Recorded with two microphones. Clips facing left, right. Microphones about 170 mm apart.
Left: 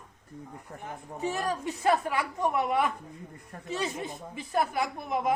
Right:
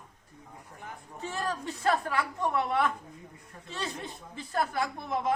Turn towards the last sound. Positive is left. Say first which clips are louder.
# left 1 dB
turn(degrees=15)  # may be behind; listen again after turning